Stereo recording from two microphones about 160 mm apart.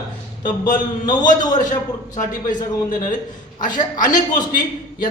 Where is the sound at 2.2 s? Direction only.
60° left (ahead or behind).